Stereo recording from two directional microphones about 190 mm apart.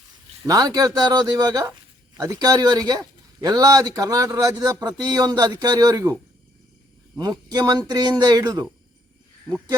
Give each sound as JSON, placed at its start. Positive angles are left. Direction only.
{"t": 0.4, "sound": "speech", "side_deg": -20}
{"t": 7.2, "sound": "speech", "side_deg": -20}